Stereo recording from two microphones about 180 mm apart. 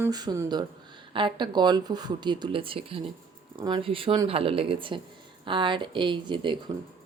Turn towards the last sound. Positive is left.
turn(degrees=-25)  # may be behind; listen again after turning